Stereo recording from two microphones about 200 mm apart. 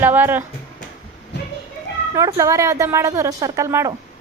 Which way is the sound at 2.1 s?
15° right (ahead or behind).